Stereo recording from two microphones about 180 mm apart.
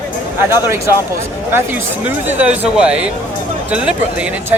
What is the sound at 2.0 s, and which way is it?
Speech, 10° right (ahead or behind).